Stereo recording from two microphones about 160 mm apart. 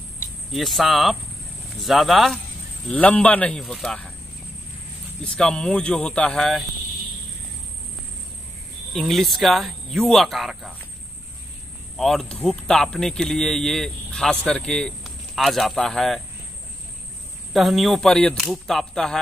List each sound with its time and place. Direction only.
0.5 s speech: centre (ahead or behind)
5.2 s speech: 5° left (ahead or behind)
8.9 s speech: centre (ahead or behind)
12.0 s speech: centre (ahead or behind)
17.5 s speech: centre (ahead or behind)